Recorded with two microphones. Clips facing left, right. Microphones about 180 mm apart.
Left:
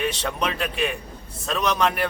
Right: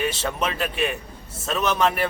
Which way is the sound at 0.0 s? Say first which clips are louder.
Even; 5° right (ahead or behind).